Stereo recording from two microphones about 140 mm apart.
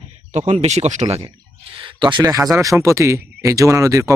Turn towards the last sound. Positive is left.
turn(degrees=-25)  # may be behind; listen again after turning